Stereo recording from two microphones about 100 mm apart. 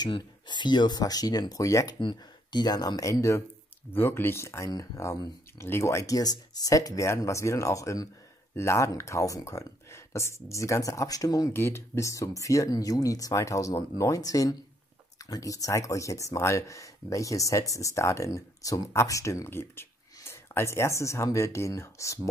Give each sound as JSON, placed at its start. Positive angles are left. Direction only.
{"t": 0.0, "sound": "speech", "side_deg": 50}
{"t": 2.0, "sound": "speech", "side_deg": 50}
{"t": 11.5, "sound": "speech", "side_deg": 25}